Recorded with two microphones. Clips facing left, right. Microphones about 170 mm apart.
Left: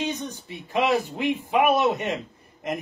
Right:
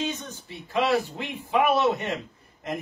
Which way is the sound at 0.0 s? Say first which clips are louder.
Left 2 dB; 15° left (ahead or behind).